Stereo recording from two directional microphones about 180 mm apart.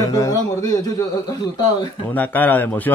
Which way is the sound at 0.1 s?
20° left (ahead or behind).